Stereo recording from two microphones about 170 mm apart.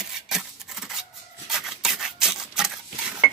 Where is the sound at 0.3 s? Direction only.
Centre (ahead or behind).